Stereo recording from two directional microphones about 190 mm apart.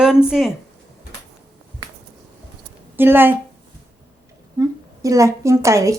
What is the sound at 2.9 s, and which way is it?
Speech, 10° right (ahead or behind).